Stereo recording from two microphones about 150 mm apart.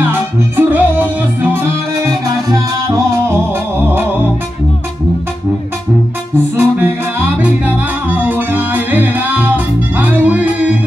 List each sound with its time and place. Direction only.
0.1 s music: 15° right (ahead or behind)
6.3 s music: 15° right (ahead or behind)